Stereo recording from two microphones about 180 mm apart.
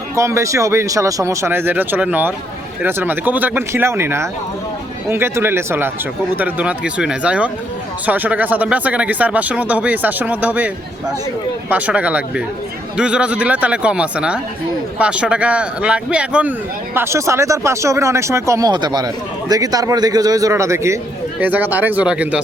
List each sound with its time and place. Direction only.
0.2 s a man's voice: 15° right (ahead or behind)
11.7 s a man's voice: 5° right (ahead or behind)